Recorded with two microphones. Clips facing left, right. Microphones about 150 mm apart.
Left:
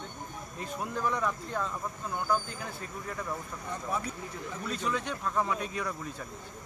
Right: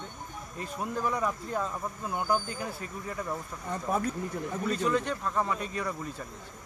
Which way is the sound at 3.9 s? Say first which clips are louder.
Right 4 dB; 50° right (ahead or behind).